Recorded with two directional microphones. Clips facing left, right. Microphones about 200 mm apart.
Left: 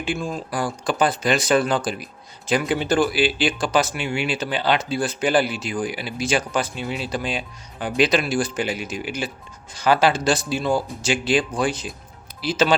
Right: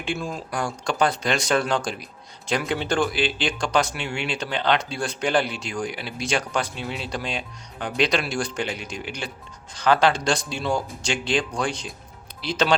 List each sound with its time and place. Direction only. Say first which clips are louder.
0.0 s speech: left 3 dB; centre (ahead or behind)